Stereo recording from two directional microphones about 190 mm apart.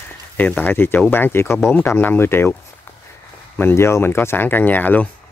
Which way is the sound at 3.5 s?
10° left (ahead or behind).